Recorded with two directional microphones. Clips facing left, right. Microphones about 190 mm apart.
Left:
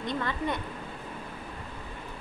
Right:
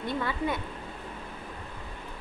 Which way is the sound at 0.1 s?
5° right (ahead or behind).